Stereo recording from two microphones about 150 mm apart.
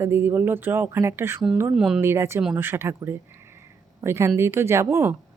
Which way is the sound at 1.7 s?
Centre (ahead or behind).